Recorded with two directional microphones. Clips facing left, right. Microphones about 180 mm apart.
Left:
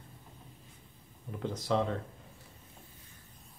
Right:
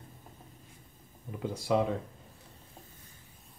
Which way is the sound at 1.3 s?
10° right (ahead or behind).